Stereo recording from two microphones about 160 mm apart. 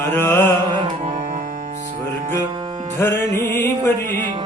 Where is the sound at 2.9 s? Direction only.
15° left (ahead or behind).